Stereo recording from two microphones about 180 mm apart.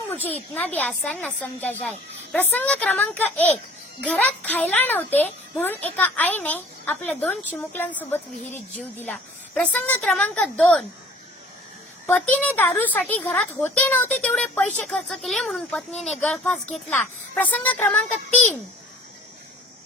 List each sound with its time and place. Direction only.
0.3 s a woman's voice: 10° left (ahead or behind)
12.0 s a woman's voice: 10° left (ahead or behind)